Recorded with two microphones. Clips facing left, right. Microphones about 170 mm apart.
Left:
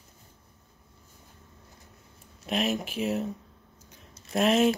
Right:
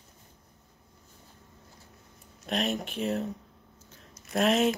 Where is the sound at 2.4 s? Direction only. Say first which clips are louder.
Left 2 dB; centre (ahead or behind).